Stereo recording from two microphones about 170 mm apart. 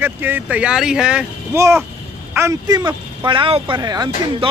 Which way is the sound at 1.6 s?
15° right (ahead or behind).